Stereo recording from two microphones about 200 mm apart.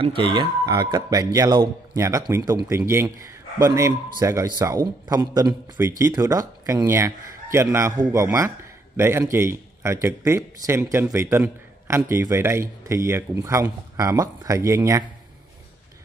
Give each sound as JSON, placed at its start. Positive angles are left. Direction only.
{"t": 0.0, "sound": "a man's voice", "side_deg": -25}